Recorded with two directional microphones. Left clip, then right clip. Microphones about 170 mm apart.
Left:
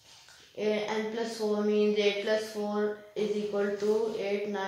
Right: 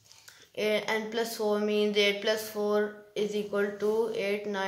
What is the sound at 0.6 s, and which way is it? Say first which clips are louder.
Music: right 2 dB; 25° right (ahead or behind).